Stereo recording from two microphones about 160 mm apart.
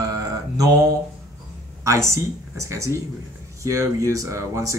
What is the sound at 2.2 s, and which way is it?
Speech, 20° right (ahead or behind).